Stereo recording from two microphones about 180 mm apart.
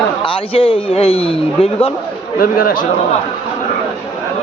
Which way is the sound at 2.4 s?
55° left (ahead or behind).